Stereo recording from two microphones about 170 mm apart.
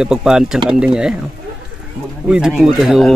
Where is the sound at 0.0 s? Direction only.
5° right (ahead or behind).